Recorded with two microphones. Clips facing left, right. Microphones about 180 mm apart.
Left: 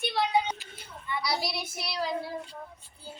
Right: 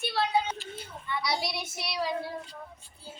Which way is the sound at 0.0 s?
15° left (ahead or behind).